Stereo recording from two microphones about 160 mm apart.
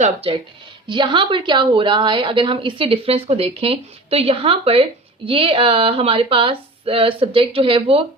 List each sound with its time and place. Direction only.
0.0 s a woman's voice: 40° right (ahead or behind)